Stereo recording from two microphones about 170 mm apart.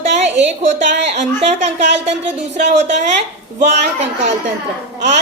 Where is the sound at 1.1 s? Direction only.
40° right (ahead or behind).